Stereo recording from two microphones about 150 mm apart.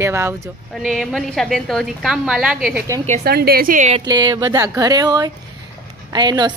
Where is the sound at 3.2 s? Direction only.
90° right; by 3.9 s 65° right (ahead or behind).